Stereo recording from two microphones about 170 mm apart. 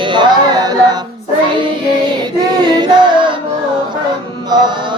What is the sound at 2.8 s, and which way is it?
Music, 30° right (ahead or behind).